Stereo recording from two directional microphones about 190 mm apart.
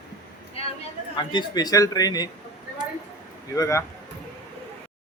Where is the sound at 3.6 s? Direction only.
15° left (ahead or behind).